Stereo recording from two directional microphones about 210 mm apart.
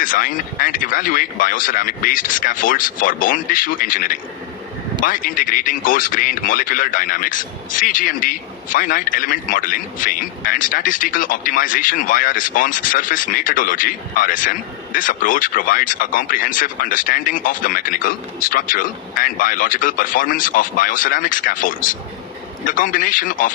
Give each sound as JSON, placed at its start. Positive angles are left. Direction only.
{"t": 0.0, "sound": "speech", "side_deg": 40}